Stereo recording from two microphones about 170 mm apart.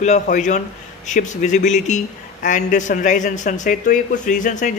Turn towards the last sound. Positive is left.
turn(degrees=45)  # may be behind; listen again after turning